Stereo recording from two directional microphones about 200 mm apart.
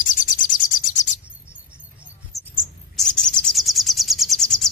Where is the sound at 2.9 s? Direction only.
5° left (ahead or behind).